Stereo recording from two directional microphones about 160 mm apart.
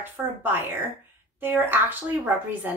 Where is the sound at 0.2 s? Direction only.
10° right (ahead or behind).